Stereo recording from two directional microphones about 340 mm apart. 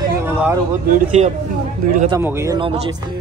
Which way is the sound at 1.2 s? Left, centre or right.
Centre.